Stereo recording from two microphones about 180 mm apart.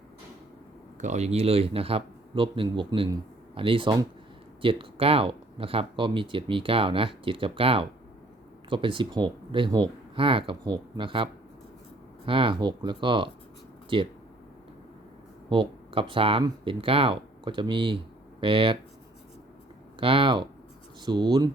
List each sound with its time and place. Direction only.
1.0 s speech: 40° right (ahead or behind)
15.4 s speech: 30° right (ahead or behind)
20.0 s speech: 30° right (ahead or behind)